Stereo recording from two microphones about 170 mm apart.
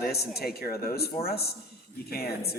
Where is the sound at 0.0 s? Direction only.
65° left (ahead or behind).